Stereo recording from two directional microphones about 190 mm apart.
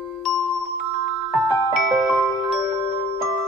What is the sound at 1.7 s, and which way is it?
Music, 5° right (ahead or behind).